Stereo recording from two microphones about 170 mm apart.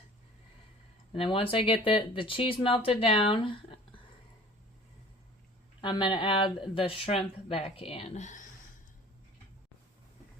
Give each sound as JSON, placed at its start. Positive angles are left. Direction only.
{"t": 1.1, "sound": "speech", "side_deg": 35}
{"t": 5.8, "sound": "speech", "side_deg": 30}